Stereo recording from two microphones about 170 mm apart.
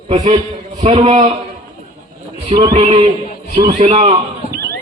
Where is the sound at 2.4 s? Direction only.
30° right (ahead or behind).